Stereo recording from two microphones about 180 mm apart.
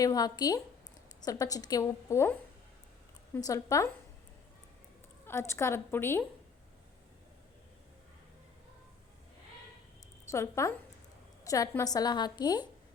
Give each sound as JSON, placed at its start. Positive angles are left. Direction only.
{"t": 0.0, "sound": "a woman's voice", "side_deg": 20}
{"t": 3.3, "sound": "a woman's voice", "side_deg": 20}
{"t": 5.2, "sound": "a woman's voice", "side_deg": 15}
{"t": 10.2, "sound": "a woman's voice", "side_deg": 15}